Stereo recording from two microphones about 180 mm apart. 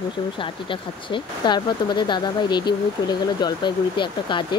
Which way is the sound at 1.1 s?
25° left (ahead or behind).